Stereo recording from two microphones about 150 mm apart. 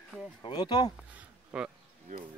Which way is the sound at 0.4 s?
30° left (ahead or behind).